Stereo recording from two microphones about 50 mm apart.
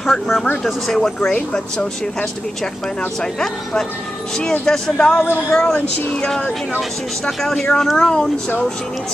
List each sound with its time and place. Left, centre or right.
0.0 s speech: centre
3.2 s speech: centre